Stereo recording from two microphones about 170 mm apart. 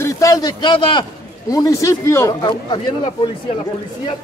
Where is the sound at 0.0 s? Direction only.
20° left (ahead or behind).